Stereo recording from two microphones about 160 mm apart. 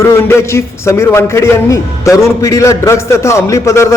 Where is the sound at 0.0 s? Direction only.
15° left (ahead or behind).